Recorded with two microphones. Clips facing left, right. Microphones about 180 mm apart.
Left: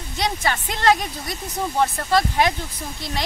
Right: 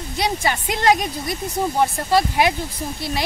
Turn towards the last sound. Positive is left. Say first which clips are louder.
# right 5 dB
turn(degrees=-10)  # may be behind; listen again after turning